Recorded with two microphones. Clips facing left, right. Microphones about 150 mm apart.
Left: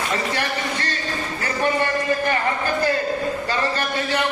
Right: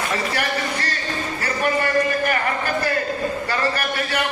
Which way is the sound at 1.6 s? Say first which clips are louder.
Right 1 dB; 25° left (ahead or behind).